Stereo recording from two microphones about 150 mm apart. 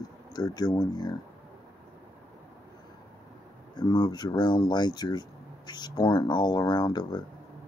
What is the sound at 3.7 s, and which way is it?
Speech, 25° left (ahead or behind).